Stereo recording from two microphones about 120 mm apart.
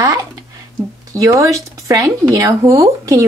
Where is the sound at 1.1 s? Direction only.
25° right (ahead or behind).